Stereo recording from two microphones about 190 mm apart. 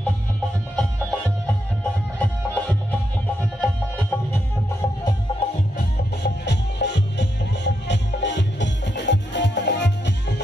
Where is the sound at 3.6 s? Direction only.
10° left (ahead or behind).